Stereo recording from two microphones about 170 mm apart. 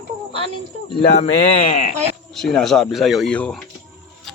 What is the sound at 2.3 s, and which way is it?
Speech, centre (ahead or behind).